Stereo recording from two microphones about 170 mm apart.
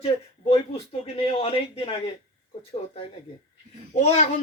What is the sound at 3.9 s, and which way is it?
Speech, 45° left (ahead or behind).